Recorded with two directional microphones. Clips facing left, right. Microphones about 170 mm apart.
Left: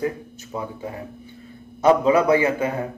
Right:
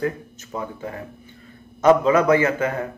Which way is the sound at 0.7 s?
15° left (ahead or behind).